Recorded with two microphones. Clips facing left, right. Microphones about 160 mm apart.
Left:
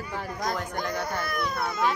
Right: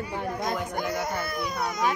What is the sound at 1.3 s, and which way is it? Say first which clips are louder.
Speech: even; 20° right (ahead or behind).